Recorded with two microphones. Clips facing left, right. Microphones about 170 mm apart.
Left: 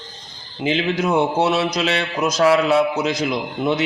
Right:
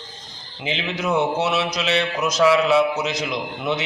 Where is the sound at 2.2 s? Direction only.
40° left (ahead or behind).